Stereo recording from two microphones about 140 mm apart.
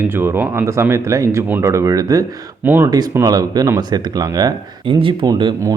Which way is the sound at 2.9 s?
25° right (ahead or behind).